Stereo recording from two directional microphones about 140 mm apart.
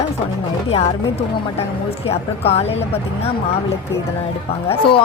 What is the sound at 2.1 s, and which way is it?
Speech, 45° left (ahead or behind).